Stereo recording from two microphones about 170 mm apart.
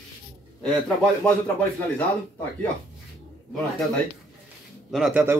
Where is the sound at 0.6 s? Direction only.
5° left (ahead or behind).